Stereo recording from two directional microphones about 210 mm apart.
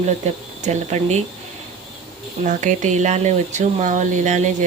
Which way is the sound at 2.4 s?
35° right (ahead or behind).